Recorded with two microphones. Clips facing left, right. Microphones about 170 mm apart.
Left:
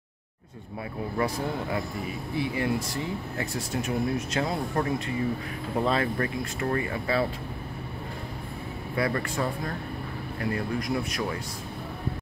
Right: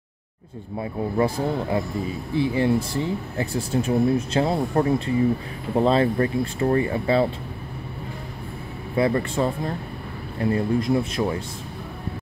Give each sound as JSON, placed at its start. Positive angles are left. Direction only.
{"t": 1.1, "sound": "speech", "side_deg": -30}
{"t": 8.9, "sound": "speech", "side_deg": -25}